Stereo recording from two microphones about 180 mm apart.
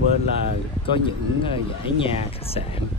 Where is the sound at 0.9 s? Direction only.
30° left (ahead or behind).